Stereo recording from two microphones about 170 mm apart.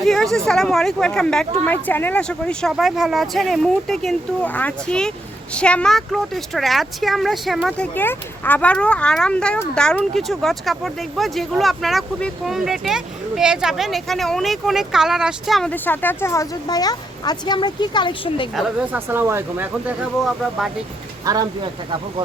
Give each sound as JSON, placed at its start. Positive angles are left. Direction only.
{"t": 0.0, "sound": "speech", "side_deg": 0}
{"t": 18.5, "sound": "speech", "side_deg": 0}
{"t": 18.9, "sound": "speech", "side_deg": -15}
{"t": 20.2, "sound": "speech", "side_deg": 0}
{"t": 21.2, "sound": "speech", "side_deg": -25}